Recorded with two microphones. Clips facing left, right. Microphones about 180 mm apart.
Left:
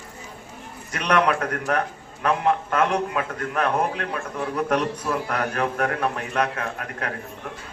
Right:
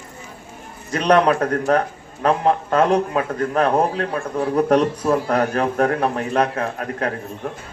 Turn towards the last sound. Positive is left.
turn(degrees=-35)  # may be behind; listen again after turning